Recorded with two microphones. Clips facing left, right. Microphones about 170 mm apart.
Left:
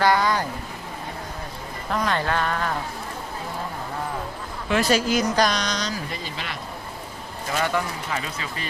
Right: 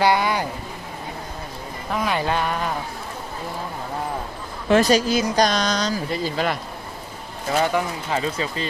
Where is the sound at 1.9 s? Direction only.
10° right (ahead or behind).